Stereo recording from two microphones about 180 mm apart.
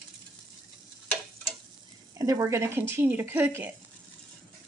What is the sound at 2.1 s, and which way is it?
A woman's voice, 20° right (ahead or behind).